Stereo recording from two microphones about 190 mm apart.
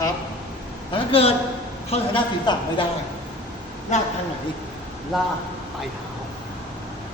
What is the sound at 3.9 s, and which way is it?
Speech, 40° left (ahead or behind).